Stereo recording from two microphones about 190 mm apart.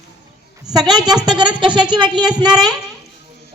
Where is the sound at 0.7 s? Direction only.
20° right (ahead or behind).